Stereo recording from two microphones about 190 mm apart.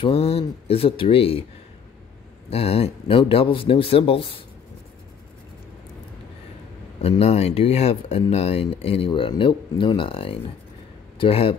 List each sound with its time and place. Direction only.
0.0 s speech: 30° left (ahead or behind)
2.5 s speech: 30° left (ahead or behind)
7.0 s speech: 30° left (ahead or behind)